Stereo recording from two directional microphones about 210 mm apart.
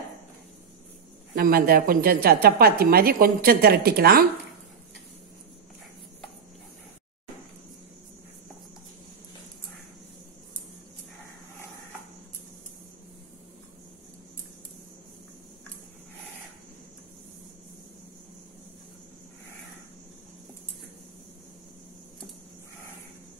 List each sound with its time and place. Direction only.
1.3 s a woman's voice: 45° right (ahead or behind)